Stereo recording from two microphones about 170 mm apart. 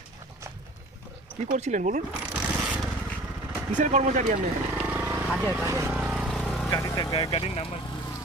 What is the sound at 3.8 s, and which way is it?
Speech, 45° right (ahead or behind).